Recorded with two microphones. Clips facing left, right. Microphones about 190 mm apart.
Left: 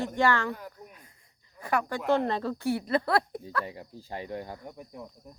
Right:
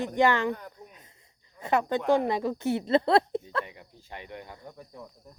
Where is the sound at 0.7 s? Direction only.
20° right (ahead or behind).